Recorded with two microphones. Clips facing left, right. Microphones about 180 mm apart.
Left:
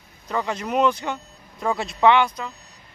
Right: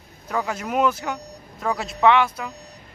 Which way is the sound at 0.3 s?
5° right (ahead or behind).